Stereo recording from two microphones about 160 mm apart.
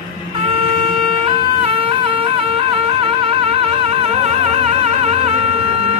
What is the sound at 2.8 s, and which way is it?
Music, 40° right (ahead or behind).